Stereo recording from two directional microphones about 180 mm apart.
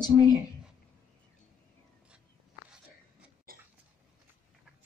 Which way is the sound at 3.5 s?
55° right (ahead or behind).